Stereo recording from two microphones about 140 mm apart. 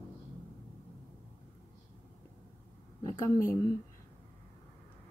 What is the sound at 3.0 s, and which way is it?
Speech, 25° left (ahead or behind).